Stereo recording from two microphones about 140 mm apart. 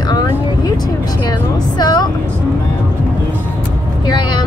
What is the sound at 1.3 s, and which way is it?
Speech, 30° left (ahead or behind).